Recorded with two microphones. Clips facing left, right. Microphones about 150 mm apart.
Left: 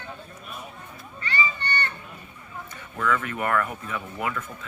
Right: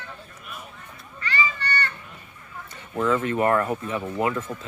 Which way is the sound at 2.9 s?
30° right (ahead or behind).